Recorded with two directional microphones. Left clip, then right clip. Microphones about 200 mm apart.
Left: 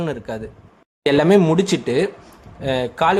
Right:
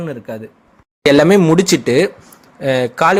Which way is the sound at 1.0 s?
15° right (ahead or behind).